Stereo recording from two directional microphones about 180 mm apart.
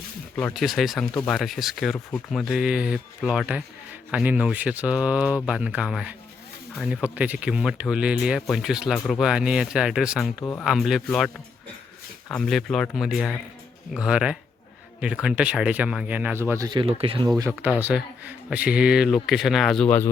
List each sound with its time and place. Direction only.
0.3 s speech: 5° left (ahead or behind)
12.3 s speech: centre (ahead or behind); by 17.3 s 30° right (ahead or behind)
17.3 s speech: 20° right (ahead or behind)
17.7 s speech: 5° right (ahead or behind)